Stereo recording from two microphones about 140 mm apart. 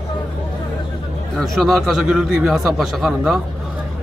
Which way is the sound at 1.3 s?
Centre (ahead or behind).